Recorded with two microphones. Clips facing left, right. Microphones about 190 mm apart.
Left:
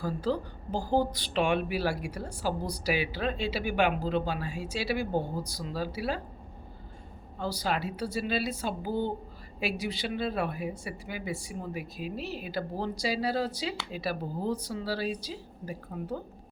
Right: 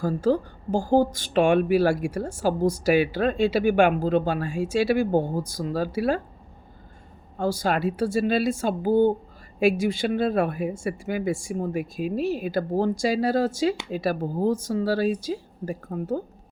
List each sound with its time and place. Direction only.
0.0 s a woman's voice: 45° right (ahead or behind)
7.3 s a woman's voice: 50° right (ahead or behind)